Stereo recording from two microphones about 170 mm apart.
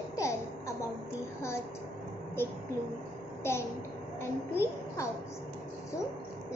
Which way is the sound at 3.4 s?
15° left (ahead or behind).